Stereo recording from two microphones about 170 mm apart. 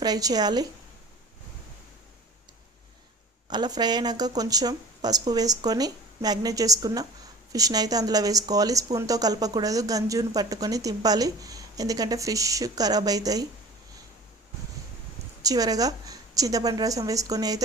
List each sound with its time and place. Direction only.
0.0 s speech: 20° right (ahead or behind)
3.5 s speech: 25° right (ahead or behind)
15.4 s speech: 20° right (ahead or behind)